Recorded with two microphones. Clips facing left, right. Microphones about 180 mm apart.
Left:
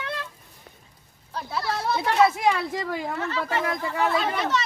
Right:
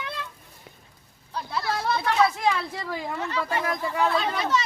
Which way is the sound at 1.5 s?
Centre (ahead or behind).